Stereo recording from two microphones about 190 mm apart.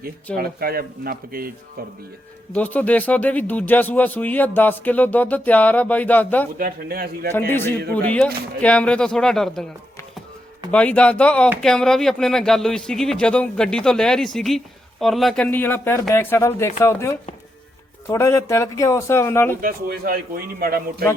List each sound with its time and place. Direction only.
0.3 s speech: 50° right (ahead or behind)
2.5 s speech: 10° left (ahead or behind)
6.6 s speech: 50° right (ahead or behind)
7.3 s speech: 10° left (ahead or behind)
10.7 s speech: 5° left (ahead or behind)
19.6 s speech: 50° right (ahead or behind)